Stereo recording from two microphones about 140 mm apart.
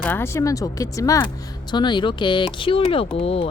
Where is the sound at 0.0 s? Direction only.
15° left (ahead or behind).